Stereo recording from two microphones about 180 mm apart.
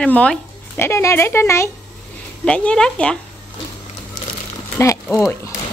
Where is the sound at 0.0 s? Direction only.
5° left (ahead or behind).